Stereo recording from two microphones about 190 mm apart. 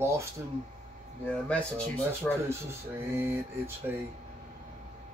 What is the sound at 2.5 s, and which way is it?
Speech, 15° right (ahead or behind).